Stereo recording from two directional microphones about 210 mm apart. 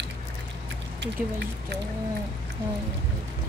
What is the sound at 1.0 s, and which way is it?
Speech, 55° right (ahead or behind).